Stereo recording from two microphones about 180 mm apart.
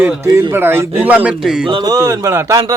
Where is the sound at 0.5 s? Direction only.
15° right (ahead or behind).